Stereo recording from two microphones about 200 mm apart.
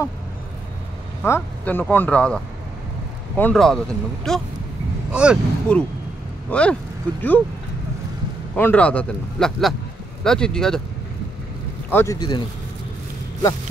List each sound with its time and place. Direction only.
1.2 s speech: 10° left (ahead or behind); by 5.4 s 5° right (ahead or behind)
5.7 s speech: 5° left (ahead or behind)
8.5 s speech: 5° left (ahead or behind)
11.9 s speech: 15° left (ahead or behind)